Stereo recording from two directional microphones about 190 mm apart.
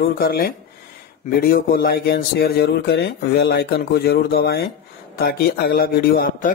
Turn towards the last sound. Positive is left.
turn(degrees=50)  # may be behind; listen again after turning